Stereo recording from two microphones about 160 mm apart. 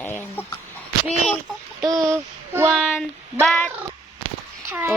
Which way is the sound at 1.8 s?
25° right (ahead or behind).